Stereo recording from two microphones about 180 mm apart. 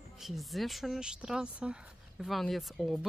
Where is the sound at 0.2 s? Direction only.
Centre (ahead or behind).